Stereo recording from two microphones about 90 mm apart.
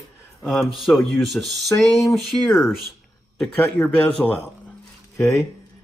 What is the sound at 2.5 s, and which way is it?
Speech, 30° left (ahead or behind).